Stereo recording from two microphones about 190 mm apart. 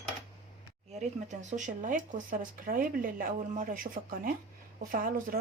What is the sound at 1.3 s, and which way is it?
Speech, 40° right (ahead or behind).